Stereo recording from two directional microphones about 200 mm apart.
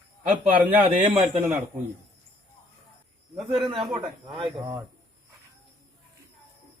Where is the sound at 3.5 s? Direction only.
25° right (ahead or behind).